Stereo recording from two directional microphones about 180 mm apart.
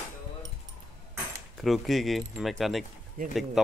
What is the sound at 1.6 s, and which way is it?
Speech, centre (ahead or behind).